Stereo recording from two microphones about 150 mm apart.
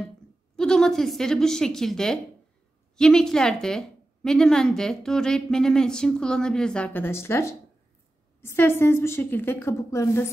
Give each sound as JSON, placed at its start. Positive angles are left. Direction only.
{"t": 0.6, "sound": "a woman's voice", "side_deg": 5}